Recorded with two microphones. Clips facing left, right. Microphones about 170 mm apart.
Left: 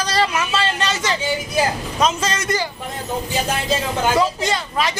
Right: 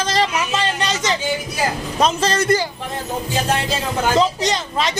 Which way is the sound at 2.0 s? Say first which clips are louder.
Right 3 dB; 35° right (ahead or behind).